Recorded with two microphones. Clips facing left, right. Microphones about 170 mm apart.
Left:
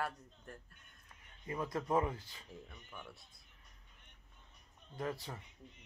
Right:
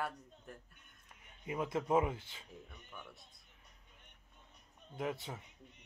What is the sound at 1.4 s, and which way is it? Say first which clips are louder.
Speech: right 2 dB; 10° right (ahead or behind).